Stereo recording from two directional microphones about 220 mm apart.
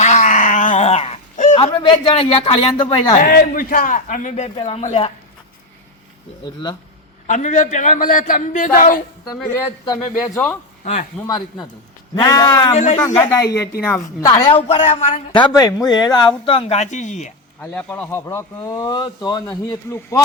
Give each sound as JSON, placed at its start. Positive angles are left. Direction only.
{"t": 0.0, "sound": "a sound", "side_deg": 35}
{"t": 1.5, "sound": "a woman's voice", "side_deg": 25}
{"t": 3.2, "sound": "a man's voice", "side_deg": 40}
{"t": 6.4, "sound": "a woman's voice", "side_deg": 20}
{"t": 7.3, "sound": "a man's voice", "side_deg": 35}
{"t": 9.9, "sound": "a woman's voice", "side_deg": 15}
{"t": 17.6, "sound": "speech", "side_deg": 5}